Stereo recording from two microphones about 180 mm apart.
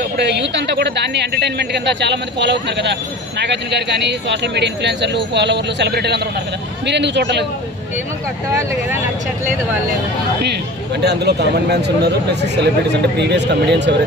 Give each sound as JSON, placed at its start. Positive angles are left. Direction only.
{"t": 0.2, "sound": "speech", "side_deg": -70}
{"t": 11.1, "sound": "speech", "side_deg": -65}